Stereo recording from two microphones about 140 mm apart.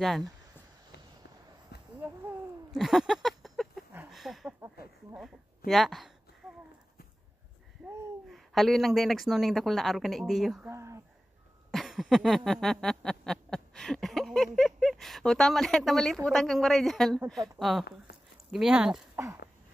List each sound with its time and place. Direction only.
0.0 s speech: centre (ahead or behind)
2.0 s a sound: 15° right (ahead or behind)
2.7 s a sound: centre (ahead or behind)
4.1 s speech: centre (ahead or behind)
5.7 s speech: centre (ahead or behind)
8.3 s speech: centre (ahead or behind)
10.7 s speech: 20° right (ahead or behind)
11.7 s a sound: centre (ahead or behind)
16.3 s speech: centre (ahead or behind)
19.2 s speech: 15° right (ahead or behind)